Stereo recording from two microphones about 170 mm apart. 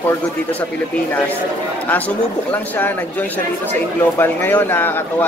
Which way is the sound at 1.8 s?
10° left (ahead or behind).